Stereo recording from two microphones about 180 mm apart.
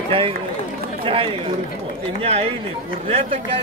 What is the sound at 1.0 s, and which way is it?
Speech, 30° right (ahead or behind).